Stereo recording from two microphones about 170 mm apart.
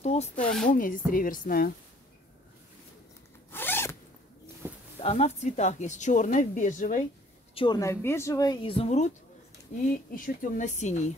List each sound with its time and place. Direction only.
0.0 s zipper: 40° left (ahead or behind)
0.7 s speech: 50° left (ahead or behind)
3.5 s zipper: 15° left (ahead or behind)
4.6 s a sound: 10° right (ahead or behind)
5.0 s speech: 40° left (ahead or behind)
7.5 s a woman's voice: 25° left (ahead or behind)
8.6 s speech: 35° left (ahead or behind)
9.8 s speech: 55° left (ahead or behind)